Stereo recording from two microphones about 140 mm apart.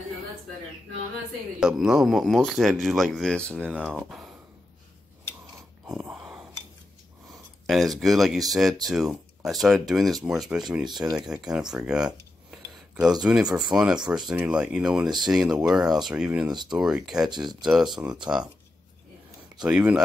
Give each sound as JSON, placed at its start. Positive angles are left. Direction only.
{"t": 1.6, "sound": "speech", "side_deg": -5}
{"t": 3.6, "sound": "speech", "side_deg": -10}
{"t": 7.6, "sound": "speech", "side_deg": 0}
{"t": 10.9, "sound": "speech", "side_deg": -30}
{"t": 11.1, "sound": "speech", "side_deg": -5}
{"t": 11.7, "sound": "a sound", "side_deg": -5}
{"t": 13.2, "sound": "speech", "side_deg": -5}
{"t": 15.0, "sound": "speech", "side_deg": -30}
{"t": 15.5, "sound": "speech", "side_deg": -5}
{"t": 19.6, "sound": "speech", "side_deg": -5}